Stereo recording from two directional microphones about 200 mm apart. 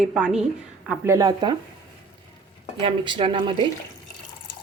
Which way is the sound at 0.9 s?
15° right (ahead or behind).